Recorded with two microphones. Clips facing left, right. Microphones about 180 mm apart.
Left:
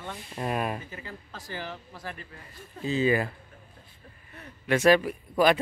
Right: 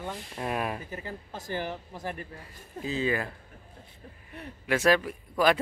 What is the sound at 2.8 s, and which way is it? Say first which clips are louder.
Speech: left 4 dB; 5° left (ahead or behind).